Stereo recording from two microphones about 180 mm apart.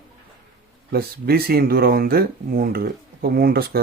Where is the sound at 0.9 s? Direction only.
60° right (ahead or behind).